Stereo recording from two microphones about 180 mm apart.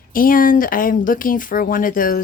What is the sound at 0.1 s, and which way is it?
Speech, 50° left (ahead or behind).